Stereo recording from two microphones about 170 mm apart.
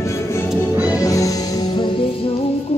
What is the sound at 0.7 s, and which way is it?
Music, 10° right (ahead or behind).